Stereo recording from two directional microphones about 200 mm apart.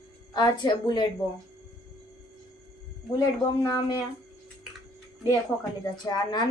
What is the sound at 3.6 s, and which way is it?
Speech, 15° left (ahead or behind).